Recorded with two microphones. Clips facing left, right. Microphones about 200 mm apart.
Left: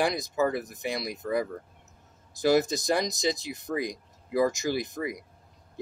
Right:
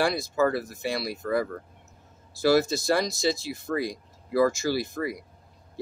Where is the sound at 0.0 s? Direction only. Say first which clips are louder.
Right 2 dB; 20° left (ahead or behind).